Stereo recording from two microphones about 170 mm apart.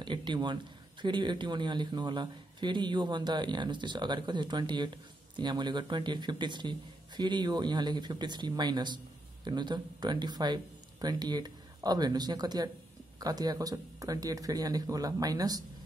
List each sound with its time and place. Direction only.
0.0 s a man's voice: 25° right (ahead or behind)